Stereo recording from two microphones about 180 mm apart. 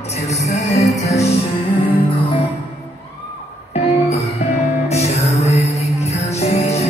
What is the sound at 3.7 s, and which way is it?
Music, 35° left (ahead or behind).